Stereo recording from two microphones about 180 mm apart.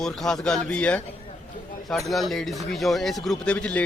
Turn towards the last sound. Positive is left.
turn(degrees=5)  # may be behind; listen again after turning